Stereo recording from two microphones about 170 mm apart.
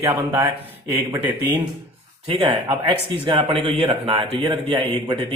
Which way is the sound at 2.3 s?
30° right (ahead or behind).